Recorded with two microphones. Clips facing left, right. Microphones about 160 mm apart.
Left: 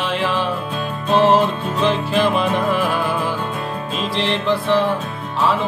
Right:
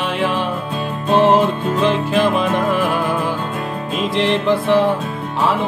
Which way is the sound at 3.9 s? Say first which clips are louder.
Right 5 dB; 15° right (ahead or behind).